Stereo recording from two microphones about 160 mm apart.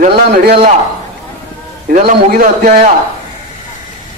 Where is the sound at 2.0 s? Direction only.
65° right (ahead or behind).